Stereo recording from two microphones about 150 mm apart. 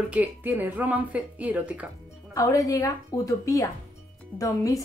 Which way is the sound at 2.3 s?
20° left (ahead or behind).